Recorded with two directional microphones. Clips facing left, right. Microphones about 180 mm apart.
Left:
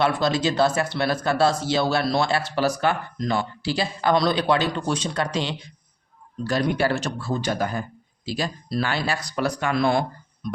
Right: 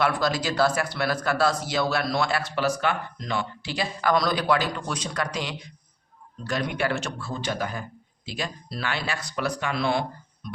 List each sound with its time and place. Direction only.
0.0 s a man's voice: 25° left (ahead or behind); by 10.1 s 45° left (ahead or behind)